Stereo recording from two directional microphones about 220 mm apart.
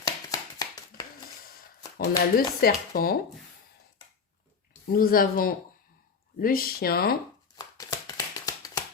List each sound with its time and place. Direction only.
0.0 s a sound: 15° left (ahead or behind)
2.3 s speech: 45° left (ahead or behind)
4.9 s speech: 40° left (ahead or behind)
7.5 s shuffling cards: 15° left (ahead or behind)